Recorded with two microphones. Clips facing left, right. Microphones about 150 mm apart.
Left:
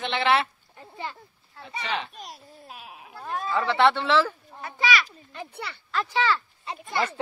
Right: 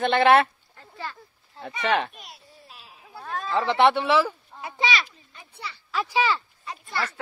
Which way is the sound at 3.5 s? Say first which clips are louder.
Right 2 dB; 20° right (ahead or behind).